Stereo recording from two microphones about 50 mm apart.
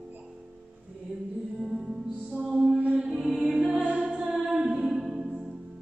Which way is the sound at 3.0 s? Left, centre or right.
Centre.